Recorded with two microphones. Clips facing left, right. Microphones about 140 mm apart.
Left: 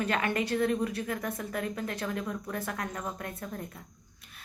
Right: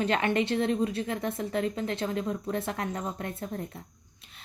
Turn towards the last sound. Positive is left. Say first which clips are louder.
# right 4 dB
turn(degrees=-30)  # may be behind; listen again after turning